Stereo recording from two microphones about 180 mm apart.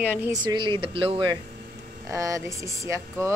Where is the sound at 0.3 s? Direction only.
20° right (ahead or behind).